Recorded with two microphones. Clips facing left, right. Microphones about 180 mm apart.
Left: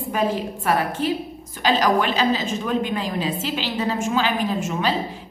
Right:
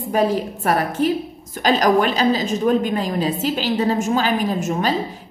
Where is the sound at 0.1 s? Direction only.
35° right (ahead or behind).